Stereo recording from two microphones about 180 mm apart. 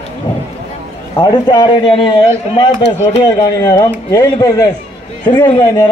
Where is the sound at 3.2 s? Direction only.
20° left (ahead or behind).